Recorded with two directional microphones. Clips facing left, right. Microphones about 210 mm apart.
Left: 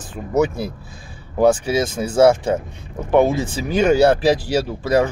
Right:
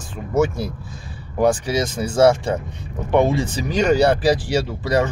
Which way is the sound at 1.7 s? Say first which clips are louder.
Left 2 dB; 10° left (ahead or behind).